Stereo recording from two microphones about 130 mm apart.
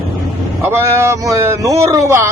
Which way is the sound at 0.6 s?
20° right (ahead or behind).